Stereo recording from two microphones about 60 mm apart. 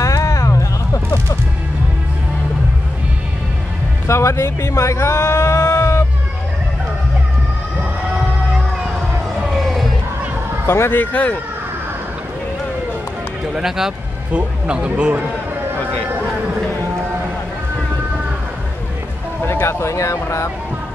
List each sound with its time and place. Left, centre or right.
0.0 s a sound: left
4.1 s speech: left
10.7 s speech: left
11.0 s speech: left
13.6 s speech: centre
14.3 s speech: centre
19.4 s speech: left